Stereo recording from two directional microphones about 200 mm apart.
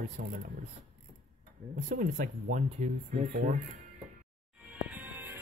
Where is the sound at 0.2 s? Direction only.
45° right (ahead or behind).